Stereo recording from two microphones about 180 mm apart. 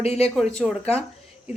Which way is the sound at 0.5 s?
5° right (ahead or behind).